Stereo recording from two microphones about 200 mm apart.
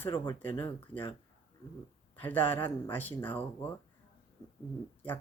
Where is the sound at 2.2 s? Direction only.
10° left (ahead or behind).